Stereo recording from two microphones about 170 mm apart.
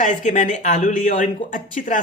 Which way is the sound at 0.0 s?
50° left (ahead or behind).